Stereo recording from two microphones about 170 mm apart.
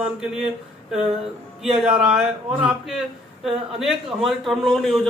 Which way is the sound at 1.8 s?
5° right (ahead or behind).